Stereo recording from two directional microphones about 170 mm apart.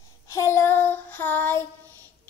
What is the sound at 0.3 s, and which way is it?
Child singing, 15° left (ahead or behind).